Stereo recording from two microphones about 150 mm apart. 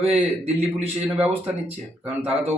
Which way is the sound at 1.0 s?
10° right (ahead or behind).